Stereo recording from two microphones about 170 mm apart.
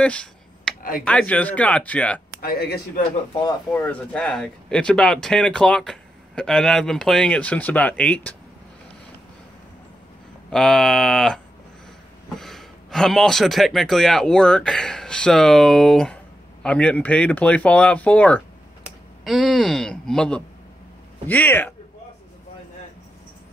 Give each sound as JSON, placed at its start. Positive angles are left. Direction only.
{"t": 0.0, "sound": "a sound", "side_deg": 5}
{"t": 1.0, "sound": "speech", "side_deg": 5}
{"t": 2.4, "sound": "speech", "side_deg": 70}
{"t": 3.7, "sound": "speech", "side_deg": 5}
{"t": 10.5, "sound": "speech", "side_deg": 5}